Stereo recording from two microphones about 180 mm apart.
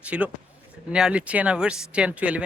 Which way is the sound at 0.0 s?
10° right (ahead or behind).